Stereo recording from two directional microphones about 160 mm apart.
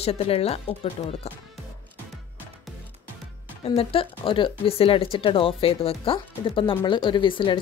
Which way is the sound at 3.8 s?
35° left (ahead or behind).